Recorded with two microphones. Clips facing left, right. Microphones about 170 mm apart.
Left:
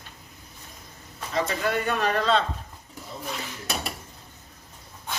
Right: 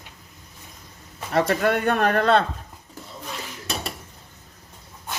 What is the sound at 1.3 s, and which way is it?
Speech, 60° right (ahead or behind).